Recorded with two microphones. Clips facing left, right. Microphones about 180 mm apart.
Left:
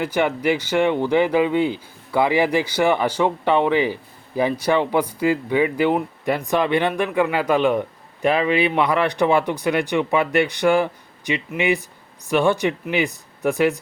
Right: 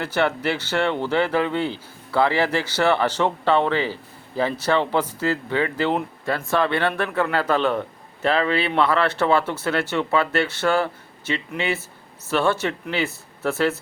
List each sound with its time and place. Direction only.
0.0 s speech: 15° left (ahead or behind)